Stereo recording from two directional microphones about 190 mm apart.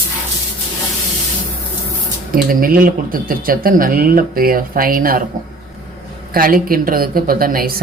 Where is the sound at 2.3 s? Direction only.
50° right (ahead or behind).